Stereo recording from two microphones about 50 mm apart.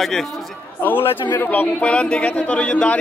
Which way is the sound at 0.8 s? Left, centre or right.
Left.